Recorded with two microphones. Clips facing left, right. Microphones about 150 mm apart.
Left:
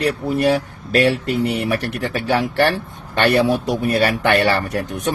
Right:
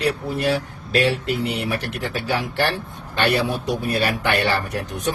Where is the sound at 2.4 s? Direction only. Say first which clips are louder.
Left 7 dB; 60° left (ahead or behind).